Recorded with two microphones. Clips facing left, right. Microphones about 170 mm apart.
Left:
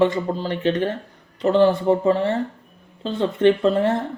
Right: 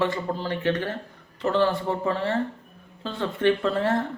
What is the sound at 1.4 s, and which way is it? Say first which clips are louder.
Speech: left 6 dB; 15° left (ahead or behind).